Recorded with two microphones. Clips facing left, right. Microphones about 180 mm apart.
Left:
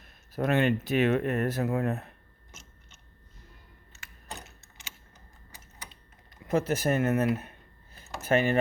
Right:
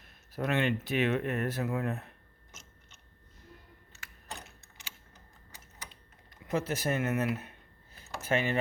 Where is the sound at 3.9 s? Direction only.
20° left (ahead or behind).